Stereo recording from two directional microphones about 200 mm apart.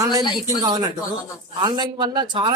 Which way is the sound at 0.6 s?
20° right (ahead or behind).